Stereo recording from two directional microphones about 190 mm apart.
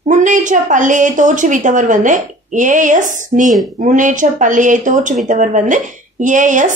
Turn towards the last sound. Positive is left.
turn(degrees=-40)  # may be behind; listen again after turning